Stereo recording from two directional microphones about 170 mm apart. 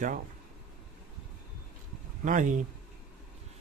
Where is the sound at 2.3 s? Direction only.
50° right (ahead or behind).